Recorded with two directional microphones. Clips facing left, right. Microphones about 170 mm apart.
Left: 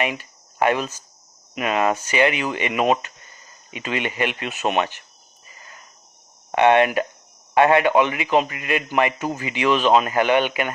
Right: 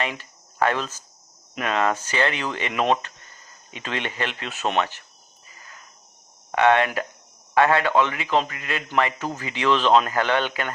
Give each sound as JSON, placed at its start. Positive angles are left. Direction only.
{"t": 0.0, "sound": "a man's voice", "side_deg": 15}
{"t": 6.5, "sound": "a man's voice", "side_deg": 20}